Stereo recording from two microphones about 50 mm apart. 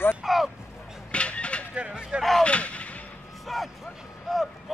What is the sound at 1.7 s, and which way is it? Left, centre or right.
Speech, right.